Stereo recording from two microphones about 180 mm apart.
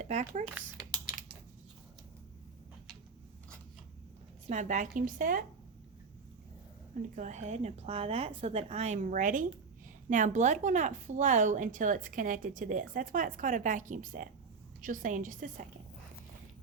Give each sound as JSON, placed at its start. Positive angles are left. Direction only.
{"t": 0.0, "sound": "speech", "side_deg": -40}
{"t": 4.4, "sound": "a woman's voice", "side_deg": -40}
{"t": 7.2, "sound": "a woman's voice", "side_deg": -40}